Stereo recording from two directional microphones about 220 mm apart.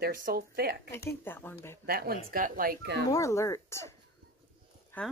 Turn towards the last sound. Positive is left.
turn(degrees=10)  # may be behind; listen again after turning